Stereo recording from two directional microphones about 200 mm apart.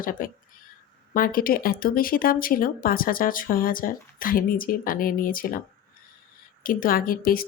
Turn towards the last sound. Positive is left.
turn(degrees=45)  # may be behind; listen again after turning